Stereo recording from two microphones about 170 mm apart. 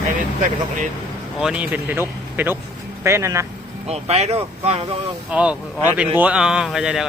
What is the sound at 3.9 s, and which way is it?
Speech, 40° right (ahead or behind).